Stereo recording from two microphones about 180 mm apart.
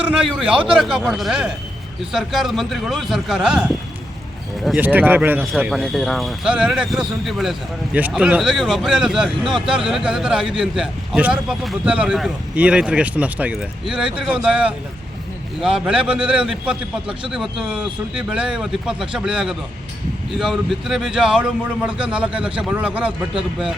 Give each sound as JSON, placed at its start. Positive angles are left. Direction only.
{"t": 0.0, "sound": "a man's voice", "side_deg": -5}
{"t": 0.5, "sound": "speech", "side_deg": -30}
{"t": 0.8, "sound": "a man's voice", "side_deg": 0}